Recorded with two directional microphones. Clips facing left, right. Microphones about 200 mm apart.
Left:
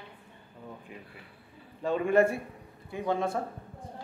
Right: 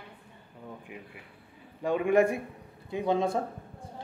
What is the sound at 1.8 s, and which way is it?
A man's voice, 15° right (ahead or behind).